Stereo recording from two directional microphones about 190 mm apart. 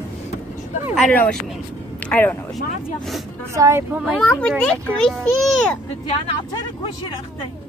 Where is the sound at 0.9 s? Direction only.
5° left (ahead or behind).